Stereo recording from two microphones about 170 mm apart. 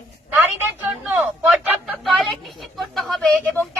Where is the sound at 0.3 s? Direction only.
10° right (ahead or behind).